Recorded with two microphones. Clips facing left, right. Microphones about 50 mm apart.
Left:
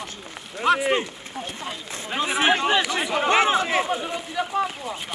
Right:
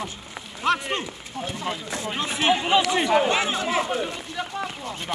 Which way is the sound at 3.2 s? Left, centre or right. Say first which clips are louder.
Left 3 dB; left.